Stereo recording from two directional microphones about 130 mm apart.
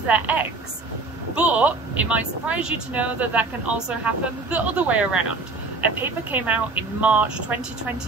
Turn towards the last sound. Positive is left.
turn(degrees=-10)  # may be behind; listen again after turning